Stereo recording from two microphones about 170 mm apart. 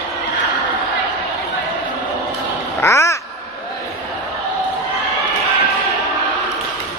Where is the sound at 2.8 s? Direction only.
15° left (ahead or behind).